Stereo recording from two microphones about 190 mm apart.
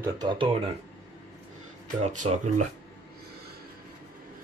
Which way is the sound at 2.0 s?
40° right (ahead or behind).